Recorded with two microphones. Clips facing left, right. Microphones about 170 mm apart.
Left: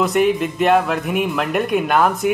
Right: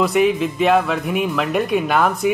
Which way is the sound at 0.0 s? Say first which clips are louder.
Even; centre (ahead or behind).